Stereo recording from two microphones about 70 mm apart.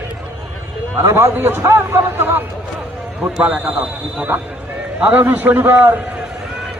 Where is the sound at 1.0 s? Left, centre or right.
Right.